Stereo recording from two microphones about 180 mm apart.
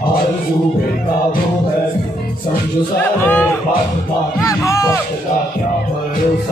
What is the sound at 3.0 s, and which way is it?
Speech, 10° left (ahead or behind).